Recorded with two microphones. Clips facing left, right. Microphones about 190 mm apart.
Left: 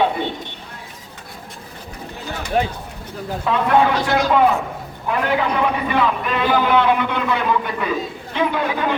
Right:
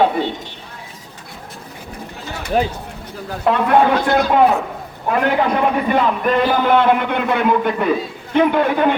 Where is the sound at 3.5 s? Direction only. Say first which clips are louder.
Right 4 dB; 60° right (ahead or behind).